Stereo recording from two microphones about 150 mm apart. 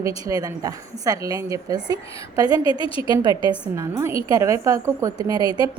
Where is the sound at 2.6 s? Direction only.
35° left (ahead or behind).